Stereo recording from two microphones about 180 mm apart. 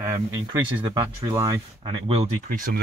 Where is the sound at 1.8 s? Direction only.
30° right (ahead or behind); by 2.8 s 45° right (ahead or behind).